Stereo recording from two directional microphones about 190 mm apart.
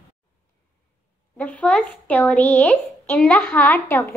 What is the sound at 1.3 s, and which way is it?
Speech, 5° left (ahead or behind).